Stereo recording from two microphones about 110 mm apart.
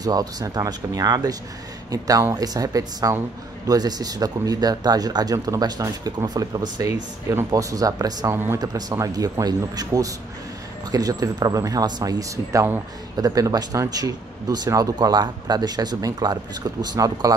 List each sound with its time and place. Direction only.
0.0 s speech: 35° right (ahead or behind)
8.3 s speech: 25° right (ahead or behind)
8.5 s speech: 35° right (ahead or behind)